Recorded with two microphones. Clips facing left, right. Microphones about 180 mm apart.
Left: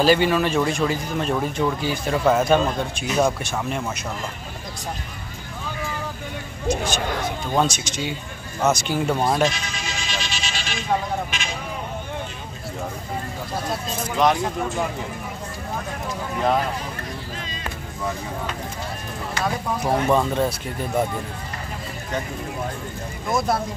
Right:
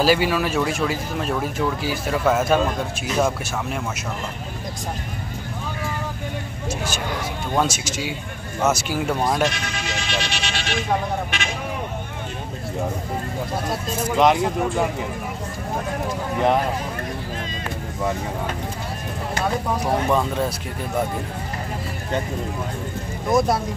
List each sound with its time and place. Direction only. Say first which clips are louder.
0.0 s speech: left 1 dB; 5° right (ahead or behind)
6.7 s speech: left 4 dB; 5° right (ahead or behind)
9.5 s vehicle: right 3 dB; 65° right (ahead or behind)
11.2 s speech: right 3 dB; 65° right (ahead or behind)
14.1 s speech: right 2 dB; 20° right (ahead or behind)
20.1 s speech: left 1 dB; centre (ahead or behind)
23.3 s speech: right 3 dB; 15° right (ahead or behind)